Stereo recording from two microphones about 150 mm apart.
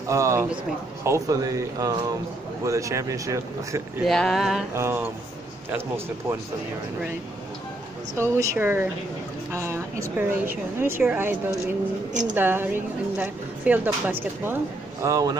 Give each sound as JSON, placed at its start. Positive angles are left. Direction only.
{"t": 0.1, "sound": "speech", "side_deg": -20}
{"t": 4.0, "sound": "a sound", "side_deg": 0}
{"t": 4.7, "sound": "speech", "side_deg": -15}
{"t": 8.1, "sound": "speech", "side_deg": -20}
{"t": 12.4, "sound": "speech", "side_deg": -15}